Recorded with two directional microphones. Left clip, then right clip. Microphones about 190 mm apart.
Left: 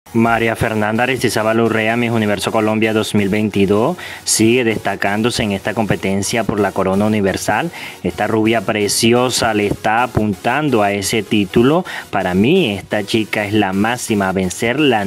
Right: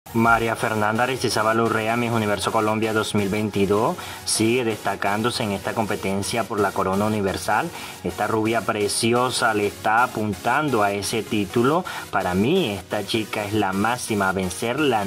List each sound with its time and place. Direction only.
0.2 s speech: 40° left (ahead or behind)